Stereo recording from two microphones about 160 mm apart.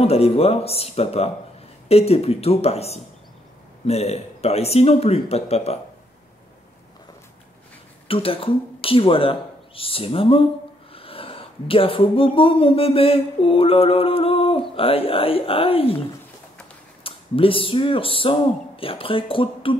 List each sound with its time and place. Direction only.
0.0 s speech: 40° left (ahead or behind)
8.1 s speech: 35° left (ahead or behind)
17.0 s speech: 35° left (ahead or behind)